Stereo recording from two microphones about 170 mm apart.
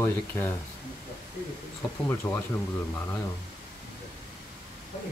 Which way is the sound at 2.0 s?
15° left (ahead or behind).